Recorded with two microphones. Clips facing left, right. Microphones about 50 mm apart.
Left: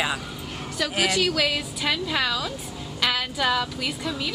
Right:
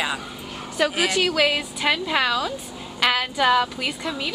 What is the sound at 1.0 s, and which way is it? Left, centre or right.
A woman's voice, centre.